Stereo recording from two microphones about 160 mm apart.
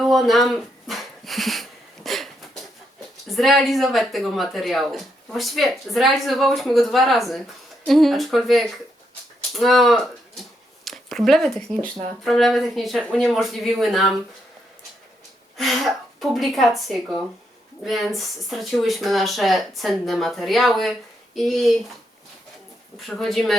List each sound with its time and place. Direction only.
0.0 s speech: centre (ahead or behind)
2.0 s a sound: centre (ahead or behind)
3.2 s speech: centre (ahead or behind)
15.5 s speech: centre (ahead or behind)
23.0 s speech: centre (ahead or behind)